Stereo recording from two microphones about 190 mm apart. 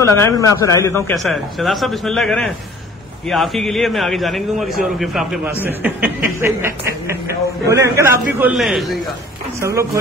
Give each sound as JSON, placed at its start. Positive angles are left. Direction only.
{"t": 0.0, "sound": "speech", "side_deg": 15}
{"t": 1.1, "sound": "a man's voice", "side_deg": 0}
{"t": 9.6, "sound": "a man's voice", "side_deg": -15}